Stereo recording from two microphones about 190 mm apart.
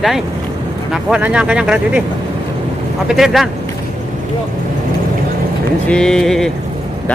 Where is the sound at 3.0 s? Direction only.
Centre (ahead or behind).